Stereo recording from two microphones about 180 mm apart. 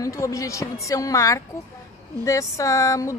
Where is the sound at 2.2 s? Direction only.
15° left (ahead or behind).